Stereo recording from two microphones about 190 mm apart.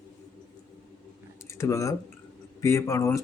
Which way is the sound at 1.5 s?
15° left (ahead or behind).